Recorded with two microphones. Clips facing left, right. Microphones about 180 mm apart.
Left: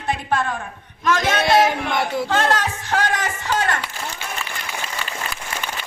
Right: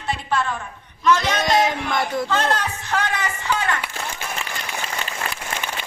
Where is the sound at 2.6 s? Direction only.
45° left (ahead or behind).